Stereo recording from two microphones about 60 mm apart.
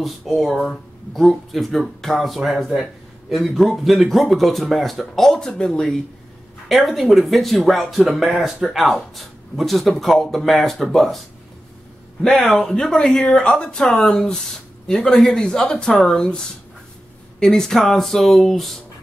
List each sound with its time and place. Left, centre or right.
0.0 s speech: centre
6.7 s speech: centre
12.2 s speech: centre